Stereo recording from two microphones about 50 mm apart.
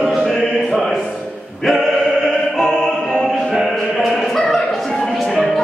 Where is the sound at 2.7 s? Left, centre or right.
Centre.